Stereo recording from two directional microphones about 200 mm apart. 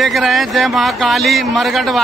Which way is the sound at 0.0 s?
Centre (ahead or behind).